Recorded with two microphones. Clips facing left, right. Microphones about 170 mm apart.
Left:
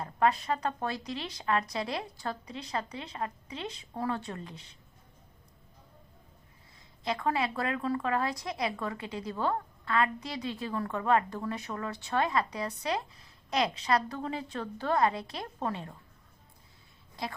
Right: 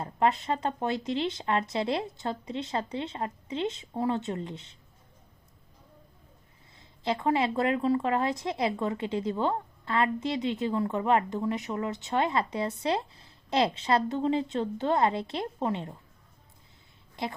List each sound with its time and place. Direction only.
0.0 s speech: 25° right (ahead or behind)
6.7 s speech: 25° right (ahead or behind)